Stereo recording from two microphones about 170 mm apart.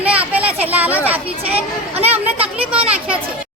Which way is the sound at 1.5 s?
35° right (ahead or behind).